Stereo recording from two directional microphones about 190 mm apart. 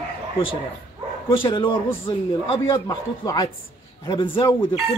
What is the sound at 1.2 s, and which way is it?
Speech, 25° left (ahead or behind).